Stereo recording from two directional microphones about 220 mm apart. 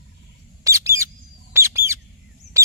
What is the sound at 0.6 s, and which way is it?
Bird, 15° right (ahead or behind).